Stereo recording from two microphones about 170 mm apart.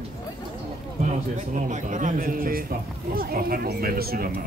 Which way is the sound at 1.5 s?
45° right (ahead or behind).